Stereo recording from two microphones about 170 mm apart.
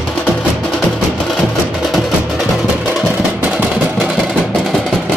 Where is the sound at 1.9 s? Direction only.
Centre (ahead or behind).